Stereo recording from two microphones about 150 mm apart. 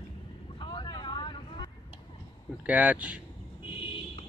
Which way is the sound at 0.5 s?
30° left (ahead or behind).